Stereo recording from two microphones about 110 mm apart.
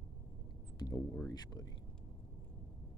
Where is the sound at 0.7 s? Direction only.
35° left (ahead or behind).